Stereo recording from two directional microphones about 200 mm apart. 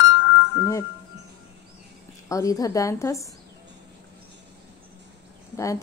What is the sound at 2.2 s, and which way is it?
A woman's voice, 15° left (ahead or behind).